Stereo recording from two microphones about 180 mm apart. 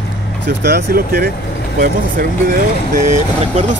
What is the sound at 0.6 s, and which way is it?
Speech, 60° right (ahead or behind).